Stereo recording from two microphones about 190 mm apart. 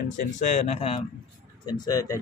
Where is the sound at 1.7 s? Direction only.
20° left (ahead or behind).